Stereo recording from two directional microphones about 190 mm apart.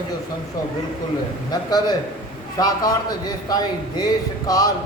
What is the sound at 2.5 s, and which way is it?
A man's voice, 20° left (ahead or behind).